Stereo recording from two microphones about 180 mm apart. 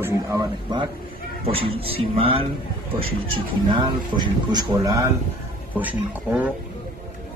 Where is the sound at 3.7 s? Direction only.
25° right (ahead or behind); by 6.5 s 10° right (ahead or behind).